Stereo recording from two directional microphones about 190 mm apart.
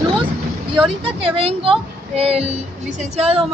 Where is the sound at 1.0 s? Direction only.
30° right (ahead or behind).